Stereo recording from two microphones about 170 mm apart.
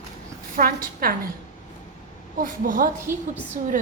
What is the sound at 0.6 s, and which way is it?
Speech, 60° right (ahead or behind).